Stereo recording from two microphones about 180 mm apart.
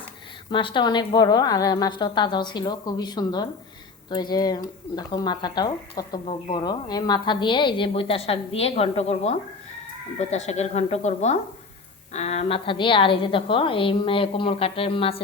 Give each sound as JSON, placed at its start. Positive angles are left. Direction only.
{"t": 0.5, "sound": "speech", "side_deg": 25}